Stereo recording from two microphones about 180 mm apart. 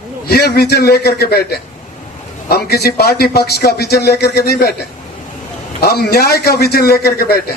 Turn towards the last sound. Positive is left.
turn(degrees=60)  # may be behind; listen again after turning